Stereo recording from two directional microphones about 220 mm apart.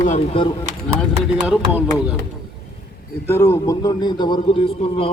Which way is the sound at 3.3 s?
15° left (ahead or behind).